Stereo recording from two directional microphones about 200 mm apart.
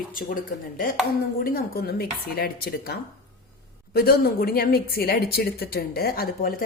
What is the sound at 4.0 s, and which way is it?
A woman's voice, 50° left (ahead or behind).